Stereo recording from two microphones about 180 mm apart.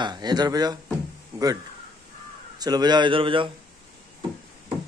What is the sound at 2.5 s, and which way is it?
Speech, 20° right (ahead or behind).